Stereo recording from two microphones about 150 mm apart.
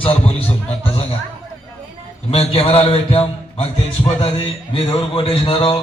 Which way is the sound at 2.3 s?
40° left (ahead or behind).